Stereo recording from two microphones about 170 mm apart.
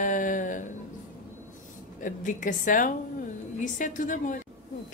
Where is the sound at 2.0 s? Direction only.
50° left (ahead or behind).